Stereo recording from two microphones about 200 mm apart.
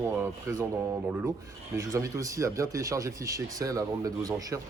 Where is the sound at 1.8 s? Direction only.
15° right (ahead or behind).